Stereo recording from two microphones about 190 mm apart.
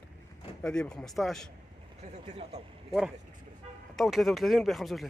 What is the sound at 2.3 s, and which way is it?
Speech, 30° right (ahead or behind).